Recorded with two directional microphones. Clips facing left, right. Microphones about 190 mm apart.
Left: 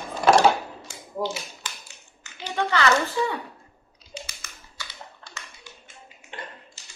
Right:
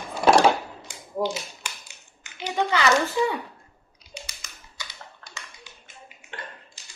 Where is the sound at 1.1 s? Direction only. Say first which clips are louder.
Right 2 dB; 15° right (ahead or behind).